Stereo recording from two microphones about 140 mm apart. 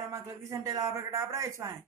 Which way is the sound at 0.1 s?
20° right (ahead or behind).